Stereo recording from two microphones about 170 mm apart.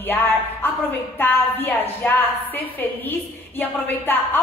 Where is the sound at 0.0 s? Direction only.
10° left (ahead or behind).